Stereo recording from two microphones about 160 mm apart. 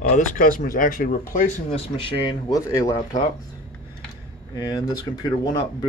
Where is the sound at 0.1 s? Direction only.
50° left (ahead or behind).